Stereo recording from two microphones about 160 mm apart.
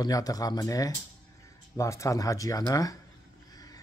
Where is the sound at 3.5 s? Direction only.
20° left (ahead or behind).